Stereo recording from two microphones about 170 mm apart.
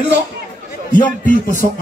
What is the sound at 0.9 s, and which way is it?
Music, 55° left (ahead or behind).